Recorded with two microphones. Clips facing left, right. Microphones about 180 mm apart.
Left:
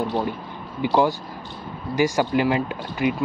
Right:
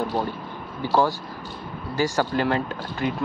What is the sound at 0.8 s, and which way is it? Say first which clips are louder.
Speech: left 2 dB; 15° left (ahead or behind).